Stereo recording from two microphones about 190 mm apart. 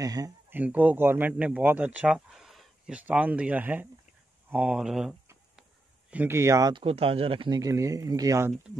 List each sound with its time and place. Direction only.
0.0 s speech: 20° right (ahead or behind)